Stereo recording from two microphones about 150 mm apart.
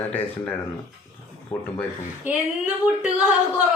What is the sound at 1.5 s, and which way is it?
Speech, 15° left (ahead or behind).